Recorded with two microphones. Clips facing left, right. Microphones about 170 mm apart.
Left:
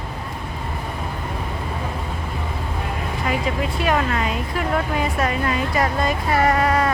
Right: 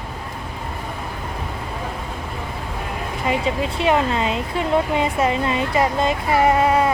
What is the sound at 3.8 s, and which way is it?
Speech, 25° right (ahead or behind).